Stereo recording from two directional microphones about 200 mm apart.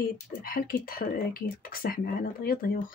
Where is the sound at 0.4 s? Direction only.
45° left (ahead or behind).